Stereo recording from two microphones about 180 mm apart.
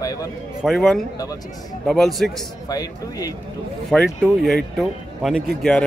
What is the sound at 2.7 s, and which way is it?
Speech, 20° left (ahead or behind).